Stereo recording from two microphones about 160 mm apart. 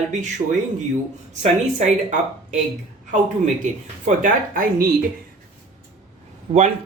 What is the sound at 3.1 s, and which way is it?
Speech, 50° right (ahead or behind).